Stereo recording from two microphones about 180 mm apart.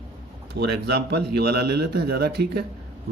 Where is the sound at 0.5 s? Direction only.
65° right (ahead or behind).